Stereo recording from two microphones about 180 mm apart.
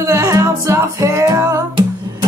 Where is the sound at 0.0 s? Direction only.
15° right (ahead or behind).